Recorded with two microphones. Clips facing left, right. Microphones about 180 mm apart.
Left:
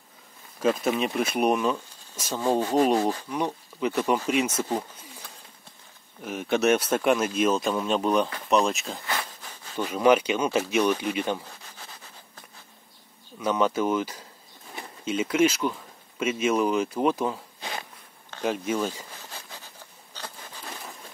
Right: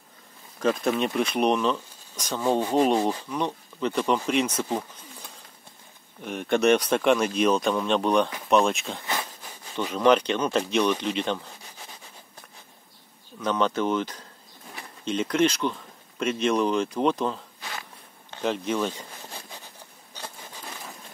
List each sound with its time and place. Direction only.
0.6 s speech: 5° left (ahead or behind)
6.2 s speech: 5° left (ahead or behind)
9.0 s a sound: 20° right (ahead or behind)
9.8 s speech: 10° left (ahead or behind)
13.4 s speech: 10° left (ahead or behind)
17.6 s a sound: 25° left (ahead or behind)
18.4 s speech: 10° left (ahead or behind)